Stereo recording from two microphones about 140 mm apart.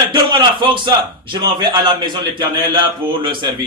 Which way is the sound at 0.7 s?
35° right (ahead or behind).